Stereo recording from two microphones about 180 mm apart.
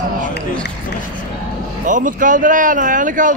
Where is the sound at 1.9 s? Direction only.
45° right (ahead or behind).